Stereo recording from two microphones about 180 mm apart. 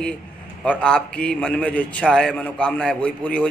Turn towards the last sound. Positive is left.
turn(degrees=5)  # may be behind; listen again after turning